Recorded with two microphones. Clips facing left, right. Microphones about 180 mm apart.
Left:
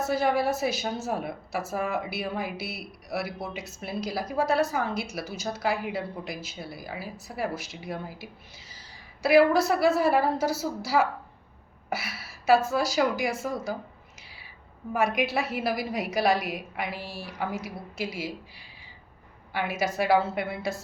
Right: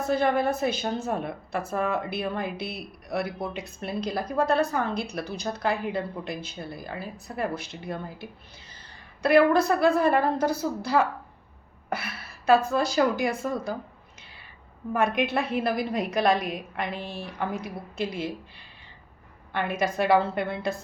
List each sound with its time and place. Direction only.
0.0 s a woman's voice: 5° left (ahead or behind)
8.7 s a sound: 60° right (ahead or behind)
9.2 s a woman's voice: 5° left (ahead or behind)
12.7 s a woman's voice: 5° left (ahead or behind)
14.2 s a sound: 5° left (ahead or behind)
14.9 s a woman's voice: 5° left (ahead or behind)